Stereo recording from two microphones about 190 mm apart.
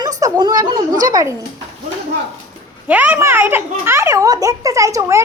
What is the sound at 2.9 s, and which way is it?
A child's voice, 10° right (ahead or behind).